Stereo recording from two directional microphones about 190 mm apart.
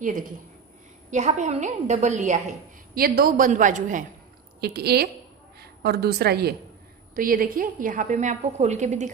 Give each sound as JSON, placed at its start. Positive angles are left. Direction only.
{"t": 1.1, "sound": "a woman's voice", "side_deg": -40}
{"t": 3.0, "sound": "a woman's voice", "side_deg": -50}
{"t": 4.6, "sound": "a woman's voice", "side_deg": -55}